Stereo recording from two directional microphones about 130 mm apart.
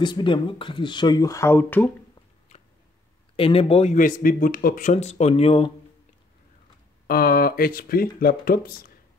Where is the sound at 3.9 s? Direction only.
90° left; by 5.7 s 50° left (ahead or behind).